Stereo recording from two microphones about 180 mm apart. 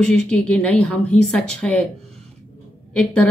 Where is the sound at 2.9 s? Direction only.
5° left (ahead or behind).